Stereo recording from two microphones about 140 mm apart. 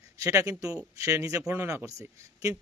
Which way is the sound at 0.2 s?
20° right (ahead or behind).